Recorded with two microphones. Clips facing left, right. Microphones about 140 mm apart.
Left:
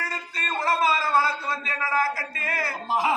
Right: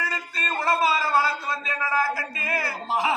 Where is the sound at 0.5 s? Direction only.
5° right (ahead or behind).